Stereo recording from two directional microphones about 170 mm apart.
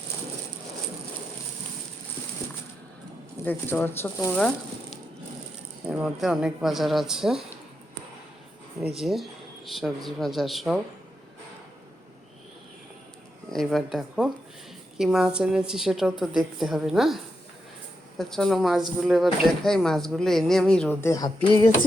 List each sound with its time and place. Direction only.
3.4 s speech: 10° left (ahead or behind)
6.0 s speech: centre (ahead or behind)
8.8 s speech: centre (ahead or behind)
13.5 s speech: centre (ahead or behind)
18.2 s speech: centre (ahead or behind)
21.0 s a sound: 20° left (ahead or behind)